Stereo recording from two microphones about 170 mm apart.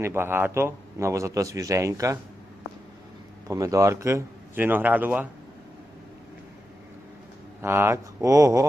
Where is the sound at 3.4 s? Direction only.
20° right (ahead or behind).